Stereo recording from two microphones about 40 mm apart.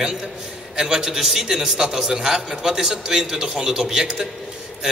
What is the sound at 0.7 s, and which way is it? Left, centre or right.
A man's voice, centre.